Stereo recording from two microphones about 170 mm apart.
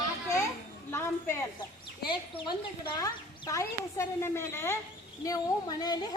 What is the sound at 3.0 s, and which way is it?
Speech, 20° left (ahead or behind).